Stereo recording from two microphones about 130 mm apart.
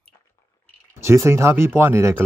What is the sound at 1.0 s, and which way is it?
Speech, 20° right (ahead or behind).